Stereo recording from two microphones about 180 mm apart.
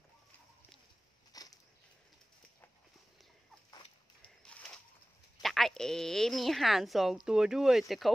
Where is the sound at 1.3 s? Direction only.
20° left (ahead or behind).